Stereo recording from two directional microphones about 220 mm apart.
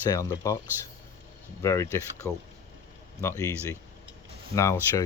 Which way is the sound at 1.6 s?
15° left (ahead or behind).